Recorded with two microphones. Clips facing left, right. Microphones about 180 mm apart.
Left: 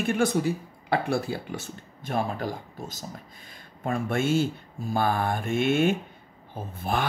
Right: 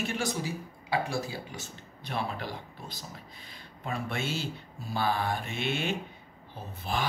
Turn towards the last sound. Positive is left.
turn(degrees=50)  # may be behind; listen again after turning